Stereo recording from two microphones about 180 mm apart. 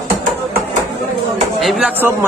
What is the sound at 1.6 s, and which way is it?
Speech, 5° right (ahead or behind).